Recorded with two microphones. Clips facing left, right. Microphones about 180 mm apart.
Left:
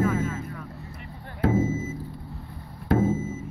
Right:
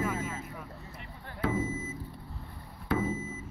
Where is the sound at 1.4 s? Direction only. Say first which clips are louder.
Left 8 dB; 45° left (ahead or behind).